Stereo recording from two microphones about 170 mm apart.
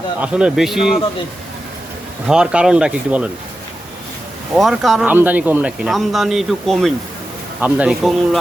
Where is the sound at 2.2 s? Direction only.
5° right (ahead or behind).